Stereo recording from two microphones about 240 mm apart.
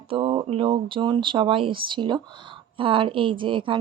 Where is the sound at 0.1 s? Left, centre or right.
Right.